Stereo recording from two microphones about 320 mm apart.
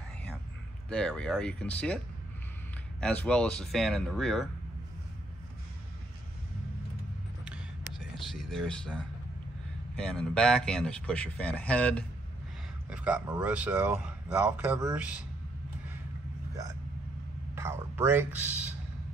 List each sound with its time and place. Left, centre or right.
0.8 s speech: centre
3.0 s speech: centre
8.2 s speech: centre
17.6 s speech: centre